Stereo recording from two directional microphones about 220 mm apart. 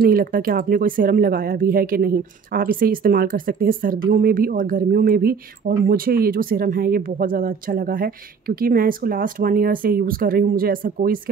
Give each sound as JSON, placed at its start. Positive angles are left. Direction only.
{"t": 0.0, "sound": "speech", "side_deg": -40}